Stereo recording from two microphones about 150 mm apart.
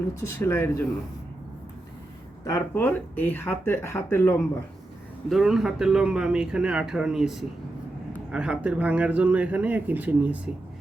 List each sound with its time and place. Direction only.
0.3 s speech: 15° left (ahead or behind)
2.4 s speech: 25° left (ahead or behind)
2.7 s speech: 10° left (ahead or behind)
5.3 s speech: 5° right (ahead or behind)